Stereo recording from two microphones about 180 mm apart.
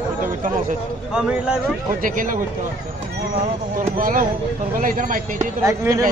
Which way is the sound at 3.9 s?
50° right (ahead or behind).